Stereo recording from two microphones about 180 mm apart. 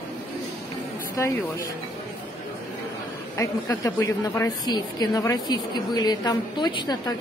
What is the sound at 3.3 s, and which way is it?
A woman's voice, 20° left (ahead or behind).